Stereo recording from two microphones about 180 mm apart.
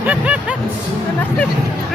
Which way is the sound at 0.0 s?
10° right (ahead or behind).